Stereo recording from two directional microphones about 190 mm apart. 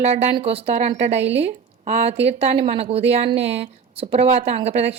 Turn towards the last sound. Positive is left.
turn(degrees=-35)  # may be behind; listen again after turning